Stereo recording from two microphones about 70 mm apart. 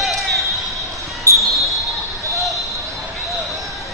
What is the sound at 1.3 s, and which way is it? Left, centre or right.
Basketball bounce, left.